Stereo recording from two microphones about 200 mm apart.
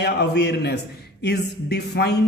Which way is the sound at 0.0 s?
55° left (ahead or behind).